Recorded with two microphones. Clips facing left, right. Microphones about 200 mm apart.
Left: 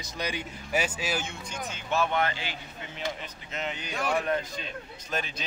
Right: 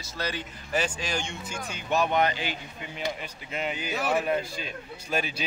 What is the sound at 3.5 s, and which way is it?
A man's voice, 10° right (ahead or behind).